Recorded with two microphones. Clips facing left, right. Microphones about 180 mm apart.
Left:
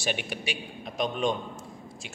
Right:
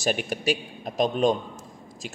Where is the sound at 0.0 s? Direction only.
40° right (ahead or behind).